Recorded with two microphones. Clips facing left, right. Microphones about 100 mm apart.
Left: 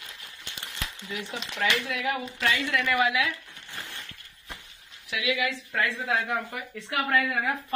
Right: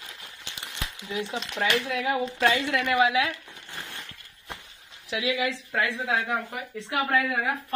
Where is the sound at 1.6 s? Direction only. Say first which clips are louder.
Right 2 dB; 20° right (ahead or behind).